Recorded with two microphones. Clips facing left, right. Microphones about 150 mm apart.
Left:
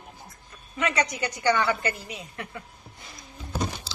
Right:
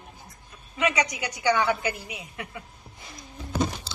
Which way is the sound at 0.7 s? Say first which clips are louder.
Right 1 dB; 10° right (ahead or behind).